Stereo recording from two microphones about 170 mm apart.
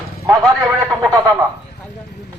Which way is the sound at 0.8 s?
20° right (ahead or behind).